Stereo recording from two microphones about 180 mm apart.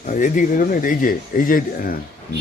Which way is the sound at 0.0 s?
45° left (ahead or behind).